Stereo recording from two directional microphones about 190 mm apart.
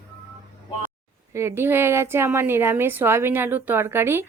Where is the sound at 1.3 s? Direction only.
15° right (ahead or behind).